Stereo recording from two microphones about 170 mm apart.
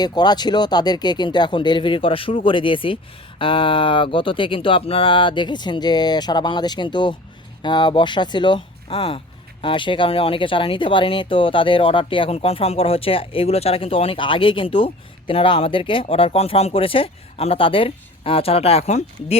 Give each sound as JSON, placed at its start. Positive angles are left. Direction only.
{"t": 0.0, "sound": "speech", "side_deg": 25}